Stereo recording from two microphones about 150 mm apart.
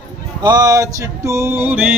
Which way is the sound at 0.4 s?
25° right (ahead or behind).